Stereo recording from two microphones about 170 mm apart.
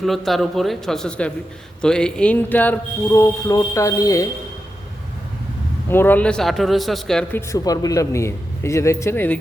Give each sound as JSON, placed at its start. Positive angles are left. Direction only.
{"t": 0.0, "sound": "a man's voice", "side_deg": 0}
{"t": 5.9, "sound": "a man's voice", "side_deg": 10}
{"t": 7.5, "sound": "speech", "side_deg": 20}